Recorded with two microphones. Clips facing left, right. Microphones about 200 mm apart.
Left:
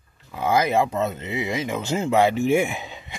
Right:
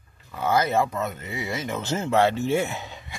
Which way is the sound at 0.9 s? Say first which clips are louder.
Left 5 dB; 25° left (ahead or behind).